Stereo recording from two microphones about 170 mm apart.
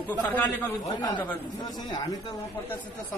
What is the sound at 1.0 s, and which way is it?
Speech, 10° left (ahead or behind).